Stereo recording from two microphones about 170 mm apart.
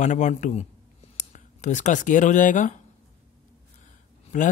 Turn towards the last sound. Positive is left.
turn(degrees=45)  # may be behind; listen again after turning